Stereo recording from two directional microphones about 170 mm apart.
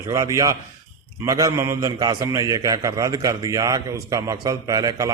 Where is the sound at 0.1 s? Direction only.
20° right (ahead or behind).